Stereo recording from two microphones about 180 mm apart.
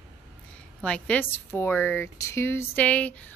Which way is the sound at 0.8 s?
5° left (ahead or behind).